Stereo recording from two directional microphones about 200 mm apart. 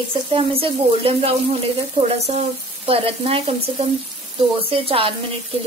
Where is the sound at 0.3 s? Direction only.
25° right (ahead or behind).